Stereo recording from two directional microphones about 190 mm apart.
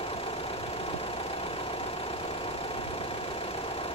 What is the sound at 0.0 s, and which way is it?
Vehicle, 30° left (ahead or behind).